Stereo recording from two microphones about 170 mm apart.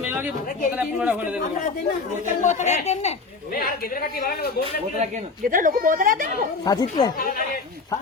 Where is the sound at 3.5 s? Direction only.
60° left (ahead or behind).